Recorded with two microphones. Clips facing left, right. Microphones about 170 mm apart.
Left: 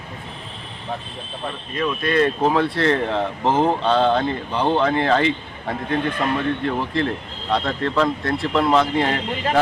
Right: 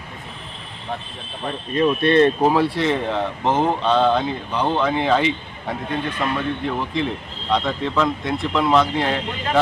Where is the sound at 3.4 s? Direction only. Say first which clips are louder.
Left 1 dB; 10° left (ahead or behind).